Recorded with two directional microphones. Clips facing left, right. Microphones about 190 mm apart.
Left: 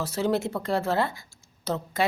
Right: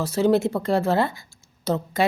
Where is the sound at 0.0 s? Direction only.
20° right (ahead or behind).